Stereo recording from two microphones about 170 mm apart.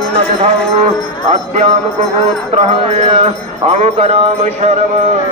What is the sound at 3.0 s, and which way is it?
Speech, 35° right (ahead or behind).